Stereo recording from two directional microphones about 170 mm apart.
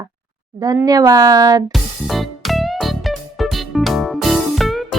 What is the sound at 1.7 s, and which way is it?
Music, centre (ahead or behind).